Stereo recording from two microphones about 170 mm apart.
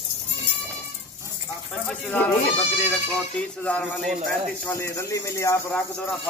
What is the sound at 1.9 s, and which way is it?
Speech, 10° left (ahead or behind).